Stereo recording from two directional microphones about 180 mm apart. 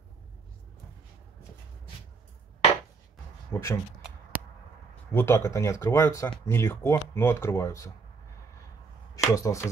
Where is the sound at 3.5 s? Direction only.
10° left (ahead or behind).